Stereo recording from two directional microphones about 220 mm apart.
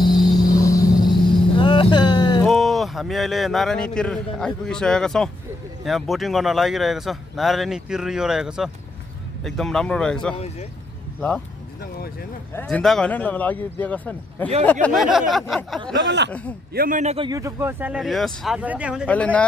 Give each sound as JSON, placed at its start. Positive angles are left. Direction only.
{"t": 0.0, "sound": "vehicle", "side_deg": 20}
{"t": 1.6, "sound": "a sound", "side_deg": 20}
{"t": 2.4, "sound": "a man's voice", "side_deg": 0}
{"t": 11.8, "sound": "speech", "side_deg": 45}
{"t": 12.5, "sound": "a man's voice", "side_deg": 5}
{"t": 16.7, "sound": "a man's voice", "side_deg": -40}
{"t": 17.3, "sound": "speech", "side_deg": -15}
{"t": 19.0, "sound": "a man's voice", "side_deg": 5}